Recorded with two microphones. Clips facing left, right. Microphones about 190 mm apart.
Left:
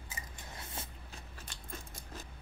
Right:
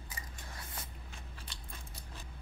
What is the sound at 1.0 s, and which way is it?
Scissors, 45° left (ahead or behind).